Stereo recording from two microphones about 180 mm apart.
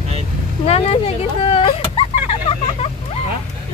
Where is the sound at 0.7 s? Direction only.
35° left (ahead or behind).